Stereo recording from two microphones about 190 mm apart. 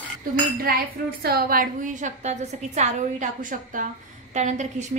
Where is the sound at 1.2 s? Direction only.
55° right (ahead or behind).